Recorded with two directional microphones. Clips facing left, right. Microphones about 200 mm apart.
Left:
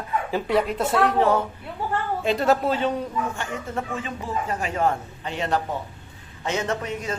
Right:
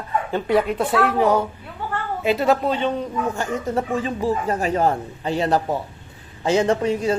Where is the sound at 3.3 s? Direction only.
40° right (ahead or behind).